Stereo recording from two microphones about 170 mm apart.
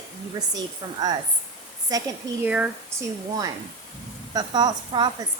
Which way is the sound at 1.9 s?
20° right (ahead or behind).